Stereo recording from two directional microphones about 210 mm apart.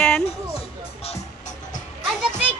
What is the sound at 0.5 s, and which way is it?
Music, 30° left (ahead or behind).